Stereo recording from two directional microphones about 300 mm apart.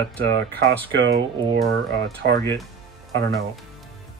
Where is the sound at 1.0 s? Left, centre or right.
Right.